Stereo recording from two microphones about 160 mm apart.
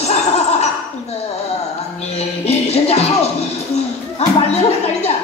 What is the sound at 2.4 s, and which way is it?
Music, 40° left (ahead or behind).